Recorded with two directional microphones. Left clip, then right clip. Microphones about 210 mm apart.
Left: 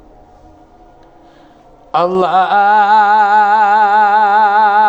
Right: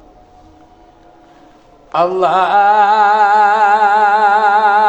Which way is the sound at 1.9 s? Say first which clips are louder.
Left 1 dB; 45° left (ahead or behind).